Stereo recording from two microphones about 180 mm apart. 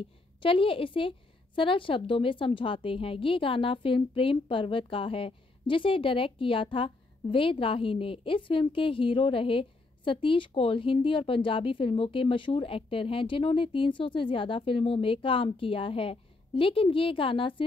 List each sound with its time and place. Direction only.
0.4 s a woman's voice: 30° left (ahead or behind)